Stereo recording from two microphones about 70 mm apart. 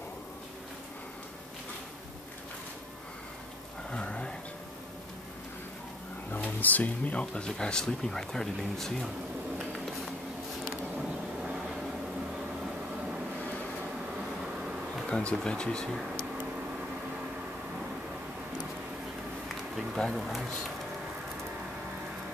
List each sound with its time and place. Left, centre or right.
3.9 s a sound: centre
6.3 s speech: left; by 9.1 s centre
15.0 s speech: centre
20.0 s speech: centre